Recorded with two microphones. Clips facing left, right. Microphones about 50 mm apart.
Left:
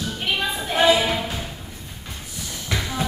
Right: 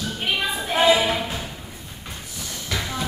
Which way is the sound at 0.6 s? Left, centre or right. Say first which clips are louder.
Even; centre.